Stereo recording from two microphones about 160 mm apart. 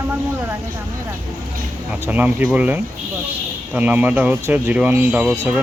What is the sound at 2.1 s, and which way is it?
Speech, 10° right (ahead or behind).